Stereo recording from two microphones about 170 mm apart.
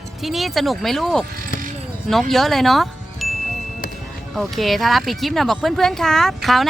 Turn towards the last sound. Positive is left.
turn(degrees=0)  # may be behind; listen again after turning